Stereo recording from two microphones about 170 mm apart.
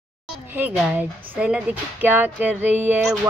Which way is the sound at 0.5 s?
10° right (ahead or behind).